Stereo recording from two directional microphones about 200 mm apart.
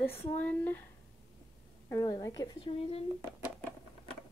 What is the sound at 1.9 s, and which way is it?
A woman's voice, 20° left (ahead or behind).